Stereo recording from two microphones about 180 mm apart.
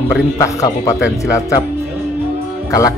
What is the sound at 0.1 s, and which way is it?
Speech, 20° left (ahead or behind).